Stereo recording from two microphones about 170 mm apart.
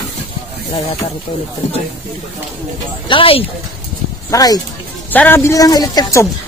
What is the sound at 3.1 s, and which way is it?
Speech, 30° left (ahead or behind).